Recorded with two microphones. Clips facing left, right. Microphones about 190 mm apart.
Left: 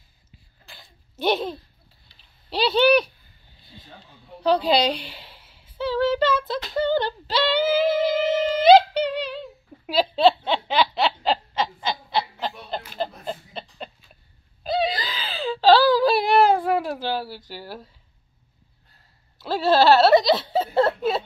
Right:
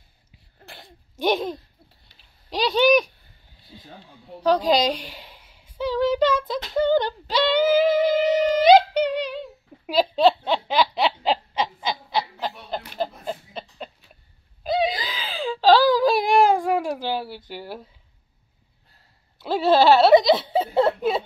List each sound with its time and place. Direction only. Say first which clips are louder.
0.7 s a sound: right 6 dB; 70° right (ahead or behind)
1.1 s speech: right 1 dB; 10° right (ahead or behind)
2.7 s speech: even; 10° right (ahead or behind)
3.7 s a sound: right 3 dB; 5° right (ahead or behind)
4.6 s a woman's voice: even; 10° right (ahead or behind)
6.4 s music: right 2 dB; 10° right (ahead or behind)
9.8 s a sound: even; 10° right (ahead or behind)
14.6 s whimper: right 1 dB; 15° right (ahead or behind)
17.0 s speech: even; 15° right (ahead or behind)
19.4 s speech: right 1 dB; 15° right (ahead or behind)